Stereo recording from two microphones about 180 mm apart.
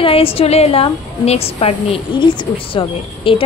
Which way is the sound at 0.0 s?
30° left (ahead or behind).